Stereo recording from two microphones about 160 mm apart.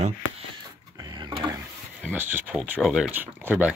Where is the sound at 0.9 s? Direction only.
25° right (ahead or behind).